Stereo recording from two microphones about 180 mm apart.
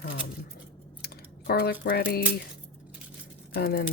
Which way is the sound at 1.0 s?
60° left (ahead or behind).